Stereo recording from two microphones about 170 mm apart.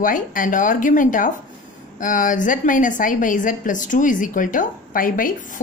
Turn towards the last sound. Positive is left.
turn(degrees=55)  # may be behind; listen again after turning